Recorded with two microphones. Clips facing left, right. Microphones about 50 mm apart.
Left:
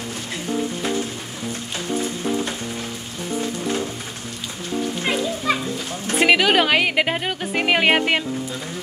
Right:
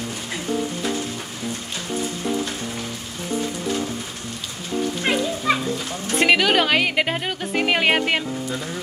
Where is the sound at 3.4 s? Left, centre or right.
Left.